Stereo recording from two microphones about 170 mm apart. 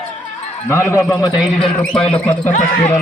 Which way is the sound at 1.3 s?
5° right (ahead or behind).